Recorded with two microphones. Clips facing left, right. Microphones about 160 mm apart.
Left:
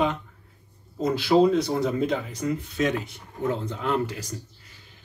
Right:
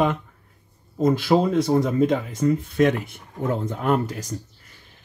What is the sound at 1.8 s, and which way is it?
Speech, 45° right (ahead or behind).